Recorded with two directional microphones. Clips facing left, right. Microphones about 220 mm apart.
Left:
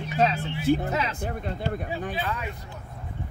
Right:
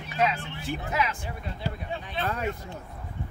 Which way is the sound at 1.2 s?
50° left (ahead or behind).